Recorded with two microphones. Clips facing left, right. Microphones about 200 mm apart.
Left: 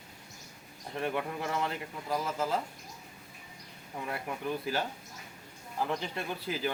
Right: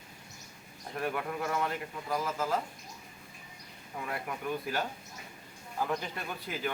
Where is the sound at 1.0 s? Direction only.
25° left (ahead or behind).